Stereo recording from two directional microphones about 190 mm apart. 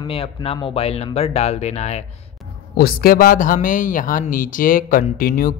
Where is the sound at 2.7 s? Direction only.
50° left (ahead or behind).